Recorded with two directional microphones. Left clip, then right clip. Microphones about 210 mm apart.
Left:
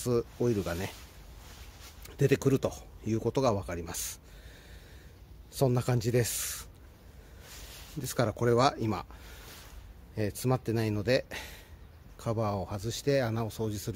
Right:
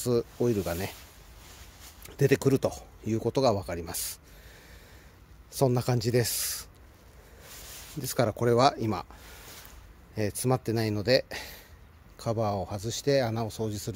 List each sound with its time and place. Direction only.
0.0 s speech: 25° right (ahead or behind)
2.0 s speech: 30° right (ahead or behind)
5.5 s speech: 30° right (ahead or behind)
8.0 s speech: 30° right (ahead or behind)
10.1 s speech: 30° right (ahead or behind)